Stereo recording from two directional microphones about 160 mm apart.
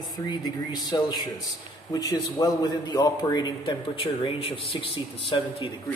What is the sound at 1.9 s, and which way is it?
A man's voice, 25° left (ahead or behind).